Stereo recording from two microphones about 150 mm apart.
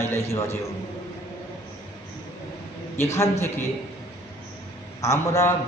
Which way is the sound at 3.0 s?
20° left (ahead or behind).